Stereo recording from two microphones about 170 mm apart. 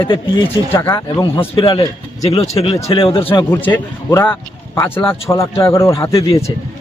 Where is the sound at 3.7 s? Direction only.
20° left (ahead or behind).